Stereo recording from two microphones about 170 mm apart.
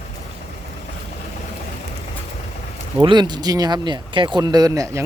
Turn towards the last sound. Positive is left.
turn(degrees=-20)  # may be behind; listen again after turning